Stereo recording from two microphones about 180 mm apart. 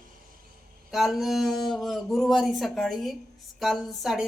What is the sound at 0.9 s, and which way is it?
A woman's voice, centre (ahead or behind).